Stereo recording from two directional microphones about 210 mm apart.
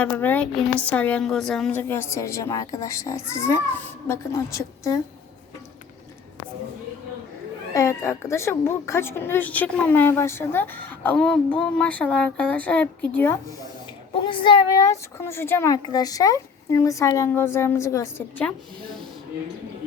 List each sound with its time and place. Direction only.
0.0 s speech: 10° left (ahead or behind)
7.7 s speech: 15° left (ahead or behind)
14.3 s speech: 25° left (ahead or behind); by 18.9 s 5° left (ahead or behind)